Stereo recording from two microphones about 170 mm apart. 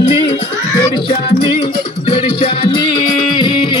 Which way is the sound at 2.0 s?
30° left (ahead or behind).